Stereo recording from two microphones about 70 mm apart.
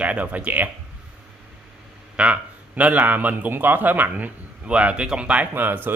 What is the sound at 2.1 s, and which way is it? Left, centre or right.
Speech, centre.